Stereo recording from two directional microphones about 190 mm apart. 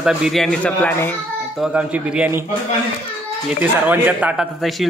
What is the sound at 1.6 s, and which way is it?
Speech, 5° right (ahead or behind).